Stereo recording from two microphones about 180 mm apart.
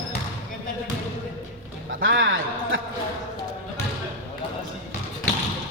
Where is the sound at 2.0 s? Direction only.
90° right.